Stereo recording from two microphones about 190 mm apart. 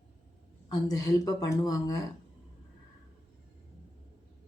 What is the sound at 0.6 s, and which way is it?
Speech, 20° left (ahead or behind).